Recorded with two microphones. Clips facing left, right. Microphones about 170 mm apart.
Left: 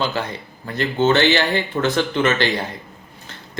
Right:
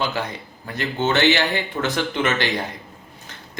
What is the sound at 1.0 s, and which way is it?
Speech, 15° right (ahead or behind).